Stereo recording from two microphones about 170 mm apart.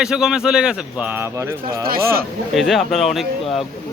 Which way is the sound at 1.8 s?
60° right (ahead or behind).